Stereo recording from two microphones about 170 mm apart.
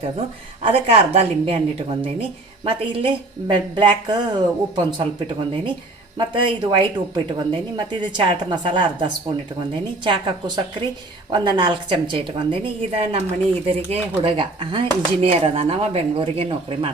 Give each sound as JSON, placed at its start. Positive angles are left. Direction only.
{"t": 0.6, "sound": "a woman's voice", "side_deg": -35}
{"t": 6.1, "sound": "a woman's voice", "side_deg": -30}